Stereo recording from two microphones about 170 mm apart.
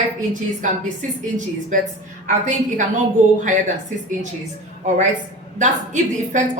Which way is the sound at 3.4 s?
45° right (ahead or behind).